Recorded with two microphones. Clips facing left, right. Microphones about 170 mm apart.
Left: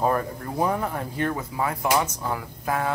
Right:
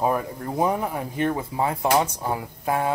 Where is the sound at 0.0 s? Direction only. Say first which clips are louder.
Even; 15° right (ahead or behind).